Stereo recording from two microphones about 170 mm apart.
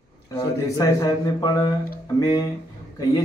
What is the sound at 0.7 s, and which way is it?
A man's voice, 25° left (ahead or behind).